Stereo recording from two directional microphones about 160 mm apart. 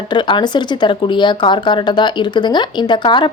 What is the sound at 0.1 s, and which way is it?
Speech, 30° left (ahead or behind).